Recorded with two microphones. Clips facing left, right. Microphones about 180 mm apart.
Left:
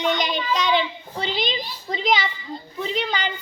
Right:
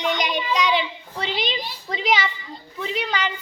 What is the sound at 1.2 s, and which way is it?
Speech, 35° left (ahead or behind).